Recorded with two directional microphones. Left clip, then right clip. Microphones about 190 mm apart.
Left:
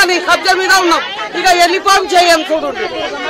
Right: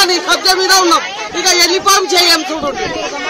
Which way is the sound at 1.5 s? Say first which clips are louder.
Left 1 dB; 25° left (ahead or behind).